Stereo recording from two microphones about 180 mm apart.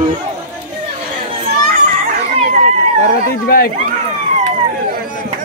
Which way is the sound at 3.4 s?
55° left (ahead or behind).